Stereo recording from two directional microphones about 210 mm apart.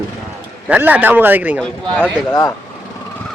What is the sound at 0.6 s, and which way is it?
A man's voice, 5° right (ahead or behind).